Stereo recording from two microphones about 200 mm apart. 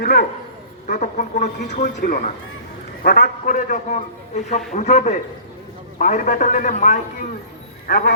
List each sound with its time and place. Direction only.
0.0 s a man's voice: 50° left (ahead or behind)
0.9 s speech: 40° left (ahead or behind)
7.9 s a man's voice: 50° left (ahead or behind)